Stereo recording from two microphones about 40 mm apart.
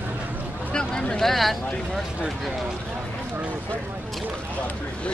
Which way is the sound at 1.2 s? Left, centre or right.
Centre.